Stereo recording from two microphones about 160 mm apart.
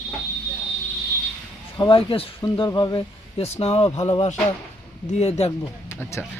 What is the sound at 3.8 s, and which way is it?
Speech, 25° left (ahead or behind).